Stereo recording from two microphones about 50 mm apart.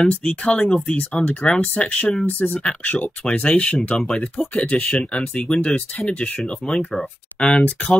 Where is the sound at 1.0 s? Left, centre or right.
Left.